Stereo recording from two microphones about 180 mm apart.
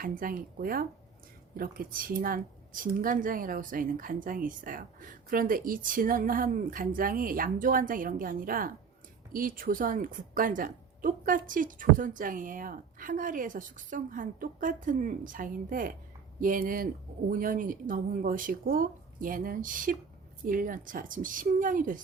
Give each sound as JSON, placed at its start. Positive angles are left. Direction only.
{"t": 0.0, "sound": "speech", "side_deg": -50}